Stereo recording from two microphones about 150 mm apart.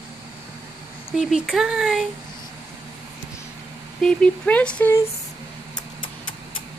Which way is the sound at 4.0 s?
5° left (ahead or behind).